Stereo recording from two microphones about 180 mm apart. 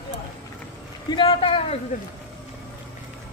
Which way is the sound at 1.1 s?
30° left (ahead or behind).